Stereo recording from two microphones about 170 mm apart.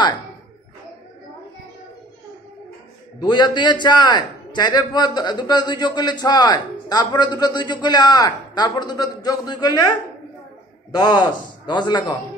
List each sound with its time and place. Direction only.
3.2 s a man's voice: 25° left (ahead or behind)